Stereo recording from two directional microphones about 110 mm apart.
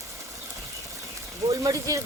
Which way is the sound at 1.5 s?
30° right (ahead or behind).